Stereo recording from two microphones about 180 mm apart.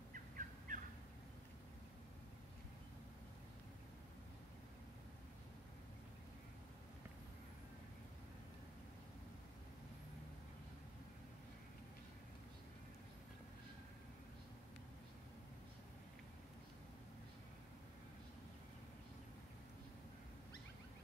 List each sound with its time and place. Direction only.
0.1 s bird: 50° right (ahead or behind)